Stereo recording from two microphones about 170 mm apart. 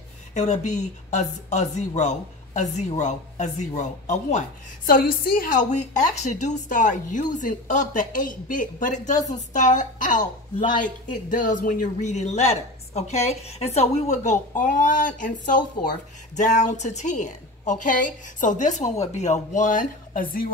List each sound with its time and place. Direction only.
0.3 s speech: 45° left (ahead or behind)